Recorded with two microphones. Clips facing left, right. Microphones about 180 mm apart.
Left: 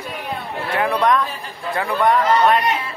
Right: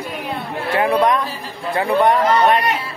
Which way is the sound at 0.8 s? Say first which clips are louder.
Right 2 dB; 25° right (ahead or behind).